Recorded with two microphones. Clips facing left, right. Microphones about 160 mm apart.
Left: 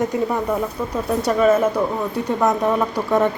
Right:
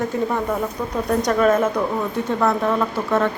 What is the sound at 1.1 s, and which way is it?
Speech, 5° left (ahead or behind).